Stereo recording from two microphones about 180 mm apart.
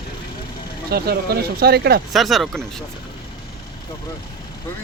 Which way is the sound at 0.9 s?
60° right (ahead or behind).